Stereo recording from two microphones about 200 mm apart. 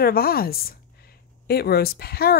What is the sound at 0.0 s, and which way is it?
Speech, 50° left (ahead or behind).